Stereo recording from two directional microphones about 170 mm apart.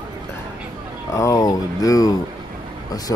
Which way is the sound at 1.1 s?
20° left (ahead or behind).